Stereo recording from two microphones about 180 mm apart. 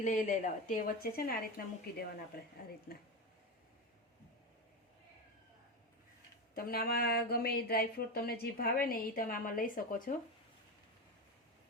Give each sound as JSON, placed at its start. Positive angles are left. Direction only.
{"t": 0.0, "sound": "speech", "side_deg": 45}
{"t": 6.5, "sound": "speech", "side_deg": 55}